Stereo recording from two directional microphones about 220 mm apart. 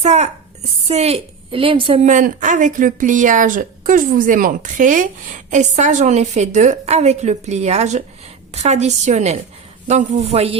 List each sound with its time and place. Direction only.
0.0 s a woman's voice: 30° right (ahead or behind)
2.0 s a woman's voice: 35° right (ahead or behind)